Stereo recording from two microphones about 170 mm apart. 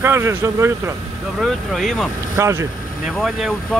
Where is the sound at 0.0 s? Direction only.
15° right (ahead or behind).